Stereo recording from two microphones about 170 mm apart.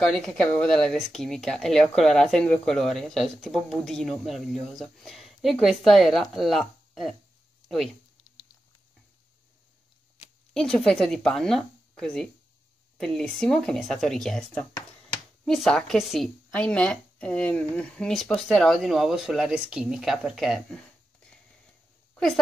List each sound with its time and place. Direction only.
0.0 s speech: 5° left (ahead or behind)
10.5 s speech: 5° left (ahead or behind)
22.1 s a sound: centre (ahead or behind)